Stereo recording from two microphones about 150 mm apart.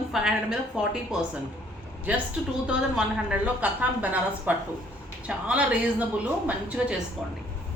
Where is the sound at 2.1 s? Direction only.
10° right (ahead or behind).